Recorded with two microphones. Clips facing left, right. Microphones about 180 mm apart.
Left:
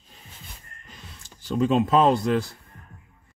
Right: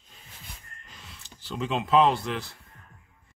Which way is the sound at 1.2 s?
45° left (ahead or behind).